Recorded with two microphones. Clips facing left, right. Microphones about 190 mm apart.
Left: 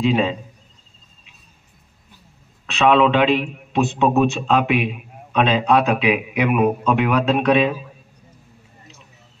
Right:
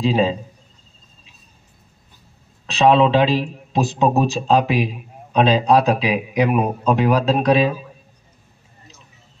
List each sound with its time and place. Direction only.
0.0 s a man's voice: 30° right (ahead or behind)
2.6 s a man's voice: 35° right (ahead or behind)